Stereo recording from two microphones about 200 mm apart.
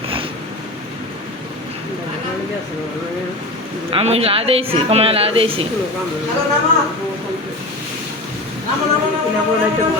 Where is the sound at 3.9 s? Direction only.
30° right (ahead or behind).